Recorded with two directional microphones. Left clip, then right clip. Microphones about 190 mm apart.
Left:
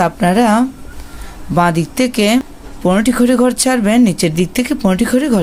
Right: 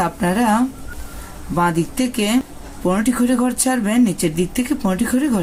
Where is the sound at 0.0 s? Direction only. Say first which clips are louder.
Left 6 dB; 45° left (ahead or behind).